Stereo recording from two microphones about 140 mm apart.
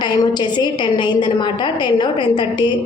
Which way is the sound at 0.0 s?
30° left (ahead or behind).